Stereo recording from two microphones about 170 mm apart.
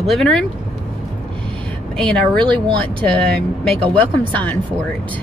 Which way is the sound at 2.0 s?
5° left (ahead or behind).